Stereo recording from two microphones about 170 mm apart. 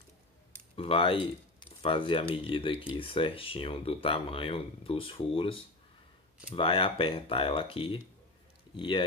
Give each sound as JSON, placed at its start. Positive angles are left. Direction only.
{"t": 0.7, "sound": "speech", "side_deg": 35}